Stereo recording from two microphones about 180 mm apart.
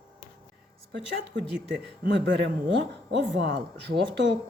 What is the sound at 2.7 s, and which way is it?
Speech, 85° right.